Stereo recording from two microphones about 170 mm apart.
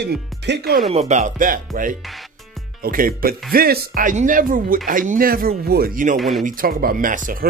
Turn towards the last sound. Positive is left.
turn(degrees=-50)  # may be behind; listen again after turning